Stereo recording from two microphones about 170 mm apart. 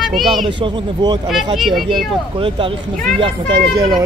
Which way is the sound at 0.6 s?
25° right (ahead or behind).